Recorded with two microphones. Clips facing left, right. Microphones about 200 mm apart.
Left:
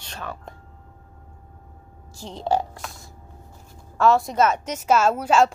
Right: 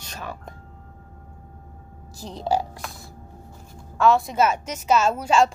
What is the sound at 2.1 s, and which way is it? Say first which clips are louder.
Speech: even; 40° right (ahead or behind).